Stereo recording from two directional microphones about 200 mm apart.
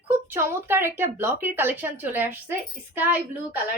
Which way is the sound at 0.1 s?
10° right (ahead or behind).